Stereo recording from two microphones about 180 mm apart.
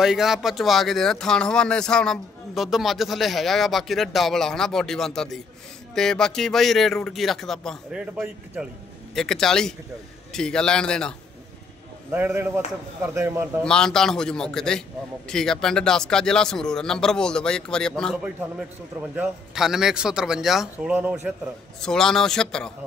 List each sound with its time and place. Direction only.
0.0 s speech: centre (ahead or behind)
12.1 s speech: 10° right (ahead or behind)
13.7 s speech: 5° left (ahead or behind)
21.8 s speech: 5° left (ahead or behind)